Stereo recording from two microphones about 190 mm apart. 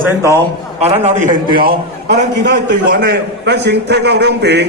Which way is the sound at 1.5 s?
50° right (ahead or behind).